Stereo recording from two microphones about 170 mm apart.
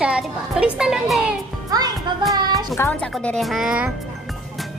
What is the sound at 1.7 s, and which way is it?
Speech, 20° right (ahead or behind).